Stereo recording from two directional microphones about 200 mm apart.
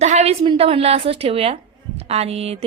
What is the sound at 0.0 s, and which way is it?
A woman's voice, 35° right (ahead or behind).